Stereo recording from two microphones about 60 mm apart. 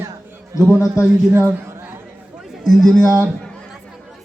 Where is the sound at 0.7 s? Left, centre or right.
Left.